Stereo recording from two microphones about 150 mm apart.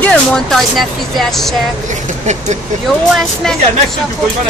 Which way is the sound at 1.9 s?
50° right (ahead or behind).